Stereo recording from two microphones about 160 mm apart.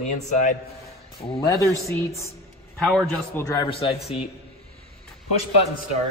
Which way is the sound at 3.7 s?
35° left (ahead or behind).